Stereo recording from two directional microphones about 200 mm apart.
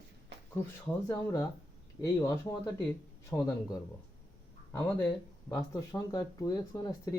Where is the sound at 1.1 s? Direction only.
15° left (ahead or behind).